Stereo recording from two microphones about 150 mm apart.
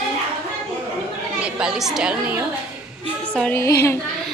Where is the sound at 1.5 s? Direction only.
5° right (ahead or behind).